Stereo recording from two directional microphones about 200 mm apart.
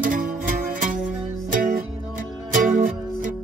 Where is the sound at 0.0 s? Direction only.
40° right (ahead or behind).